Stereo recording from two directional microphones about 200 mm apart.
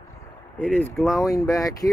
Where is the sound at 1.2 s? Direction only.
15° left (ahead or behind).